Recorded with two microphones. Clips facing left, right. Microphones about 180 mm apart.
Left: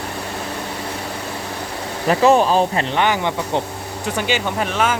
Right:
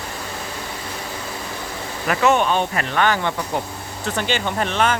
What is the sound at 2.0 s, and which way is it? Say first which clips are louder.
Speech: left 4 dB; 30° left (ahead or behind).